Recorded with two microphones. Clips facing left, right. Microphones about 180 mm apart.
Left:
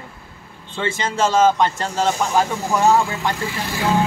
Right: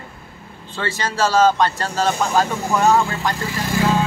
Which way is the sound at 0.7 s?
25° left (ahead or behind).